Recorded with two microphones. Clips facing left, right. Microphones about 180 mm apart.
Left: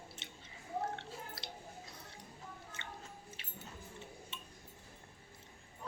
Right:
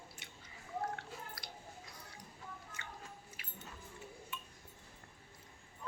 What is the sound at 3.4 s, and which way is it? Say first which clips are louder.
Music: left 1 dB; 25° left (ahead or behind).